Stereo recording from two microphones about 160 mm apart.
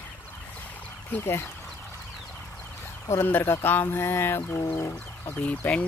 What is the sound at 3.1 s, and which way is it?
Speech, 15° left (ahead or behind).